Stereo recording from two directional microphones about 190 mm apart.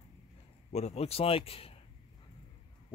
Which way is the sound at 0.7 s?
35° left (ahead or behind).